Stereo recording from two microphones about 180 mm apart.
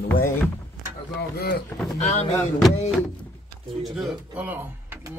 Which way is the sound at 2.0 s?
40° left (ahead or behind).